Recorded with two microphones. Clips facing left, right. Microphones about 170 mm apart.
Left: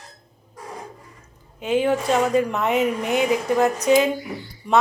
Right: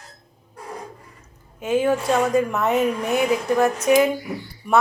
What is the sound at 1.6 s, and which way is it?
A woman's voice, 20° left (ahead or behind).